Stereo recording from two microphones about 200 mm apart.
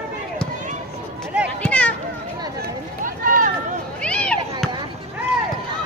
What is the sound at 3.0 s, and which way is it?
Run, 45° right (ahead or behind).